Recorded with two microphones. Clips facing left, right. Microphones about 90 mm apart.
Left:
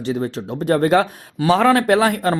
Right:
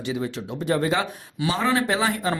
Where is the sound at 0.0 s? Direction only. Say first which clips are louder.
Left 5 dB; 40° left (ahead or behind).